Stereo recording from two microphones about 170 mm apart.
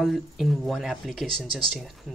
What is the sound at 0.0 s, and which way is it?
Speech, centre (ahead or behind).